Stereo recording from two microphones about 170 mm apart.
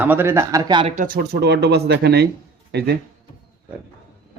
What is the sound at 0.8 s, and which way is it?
Speech, 50° right (ahead or behind).